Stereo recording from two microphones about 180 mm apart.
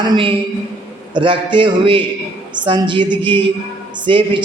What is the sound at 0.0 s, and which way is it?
A man's voice, 25° right (ahead or behind).